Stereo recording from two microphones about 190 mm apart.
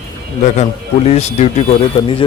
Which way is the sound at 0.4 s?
35° left (ahead or behind).